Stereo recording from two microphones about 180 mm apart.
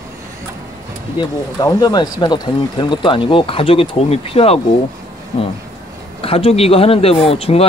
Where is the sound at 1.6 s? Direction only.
20° left (ahead or behind).